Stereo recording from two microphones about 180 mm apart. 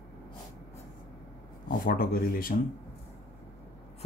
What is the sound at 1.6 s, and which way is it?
Speech, 55° left (ahead or behind).